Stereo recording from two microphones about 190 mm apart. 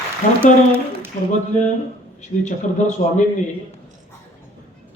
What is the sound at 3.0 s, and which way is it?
Speech, 35° left (ahead or behind).